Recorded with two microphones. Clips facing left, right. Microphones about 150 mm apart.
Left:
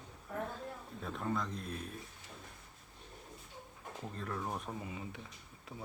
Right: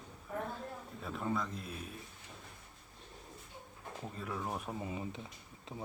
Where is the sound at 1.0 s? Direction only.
Centre (ahead or behind).